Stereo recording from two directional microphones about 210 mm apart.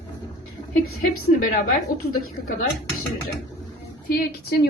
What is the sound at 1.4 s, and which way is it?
A woman's voice, 40° left (ahead or behind).